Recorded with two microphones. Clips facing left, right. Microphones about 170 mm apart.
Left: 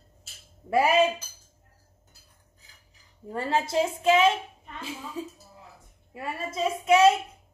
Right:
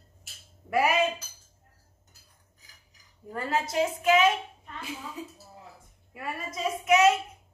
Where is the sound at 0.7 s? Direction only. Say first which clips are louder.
Left 2 dB; 30° left (ahead or behind).